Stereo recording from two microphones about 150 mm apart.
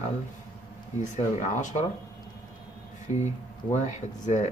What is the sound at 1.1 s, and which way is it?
Speech, 55° left (ahead or behind).